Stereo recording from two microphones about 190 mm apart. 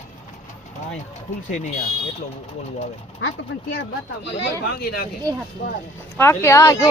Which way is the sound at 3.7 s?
65° left (ahead or behind).